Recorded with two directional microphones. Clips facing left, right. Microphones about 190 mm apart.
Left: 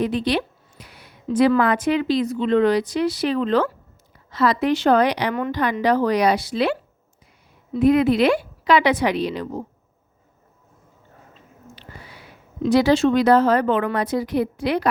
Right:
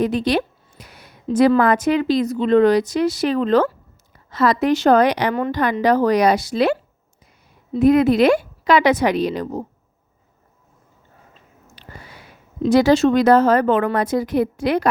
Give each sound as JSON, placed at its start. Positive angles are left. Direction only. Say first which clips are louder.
{"t": 0.0, "sound": "a woman's voice", "louder": "right 3 dB", "side_deg": -45}
{"t": 5.3, "sound": "a woman's voice", "louder": "right 3 dB", "side_deg": -35}
{"t": 5.8, "sound": "speech", "louder": "right 3 dB", "side_deg": -45}
{"t": 7.8, "sound": "speech", "louder": "right 2 dB", "side_deg": -45}
{"t": 11.7, "sound": "a sound", "louder": "right 2 dB", "side_deg": -45}
{"t": 12.6, "sound": "speech", "louder": "right 2 dB", "side_deg": -45}